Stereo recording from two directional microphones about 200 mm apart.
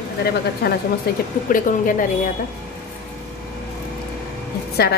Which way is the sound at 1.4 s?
40° left (ahead or behind).